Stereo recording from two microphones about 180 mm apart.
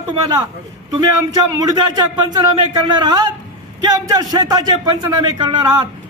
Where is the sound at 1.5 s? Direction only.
20° right (ahead or behind).